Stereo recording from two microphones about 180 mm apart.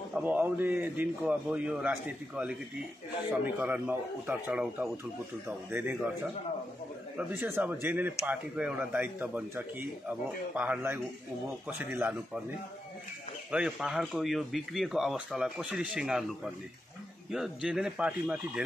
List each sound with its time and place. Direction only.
0.1 s speech: 10° right (ahead or behind)
7.2 s speech: 10° right (ahead or behind)
13.5 s speech: 5° right (ahead or behind)
17.3 s speech: 5° right (ahead or behind)